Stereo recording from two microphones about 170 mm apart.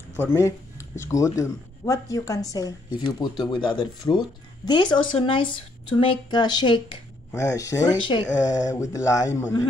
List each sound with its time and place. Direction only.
0.2 s speech: 15° left (ahead or behind)